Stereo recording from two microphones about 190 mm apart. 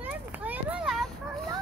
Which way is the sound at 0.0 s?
10° right (ahead or behind).